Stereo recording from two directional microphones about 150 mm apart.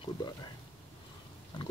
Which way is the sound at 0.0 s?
30° left (ahead or behind).